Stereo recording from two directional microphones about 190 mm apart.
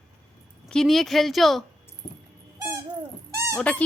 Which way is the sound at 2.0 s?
25° left (ahead or behind).